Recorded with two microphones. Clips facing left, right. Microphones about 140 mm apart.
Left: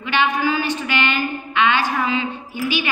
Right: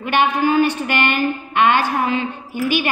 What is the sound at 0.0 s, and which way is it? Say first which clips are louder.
A woman's voice: right 3 dB; 50° right (ahead or behind).